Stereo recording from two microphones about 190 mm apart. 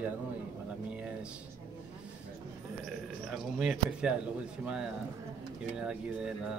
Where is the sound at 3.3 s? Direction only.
5° right (ahead or behind).